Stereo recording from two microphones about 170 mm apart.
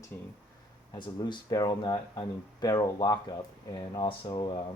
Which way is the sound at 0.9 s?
25° left (ahead or behind).